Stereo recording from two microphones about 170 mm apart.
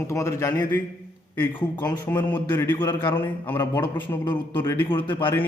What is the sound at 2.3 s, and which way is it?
A man's voice, 10° left (ahead or behind).